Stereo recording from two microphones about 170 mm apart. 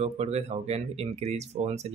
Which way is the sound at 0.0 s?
40° right (ahead or behind).